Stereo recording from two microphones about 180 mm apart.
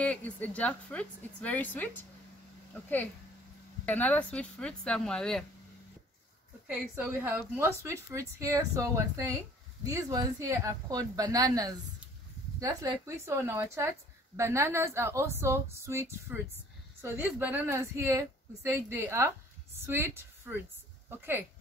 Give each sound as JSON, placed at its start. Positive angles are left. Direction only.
{"t": 0.0, "sound": "a woman's voice", "side_deg": 10}
{"t": 6.7, "sound": "a woman's voice", "side_deg": -10}